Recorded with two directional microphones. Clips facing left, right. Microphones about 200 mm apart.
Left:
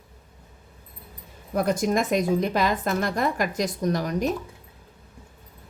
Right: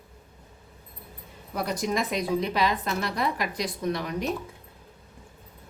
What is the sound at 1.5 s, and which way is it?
A woman's voice, 50° left (ahead or behind).